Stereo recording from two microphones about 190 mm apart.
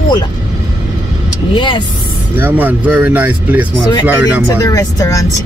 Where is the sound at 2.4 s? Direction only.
10° right (ahead or behind).